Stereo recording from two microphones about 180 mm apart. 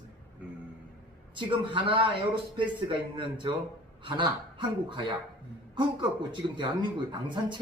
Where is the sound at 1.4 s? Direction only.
30° right (ahead or behind).